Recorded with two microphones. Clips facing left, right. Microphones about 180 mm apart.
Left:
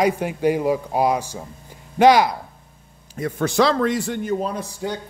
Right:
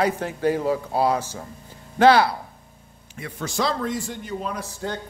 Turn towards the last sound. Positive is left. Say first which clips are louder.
# left 3 dB
turn(degrees=15)  # may be behind; listen again after turning